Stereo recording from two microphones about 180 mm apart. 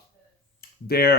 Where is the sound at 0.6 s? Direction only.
60° left (ahead or behind).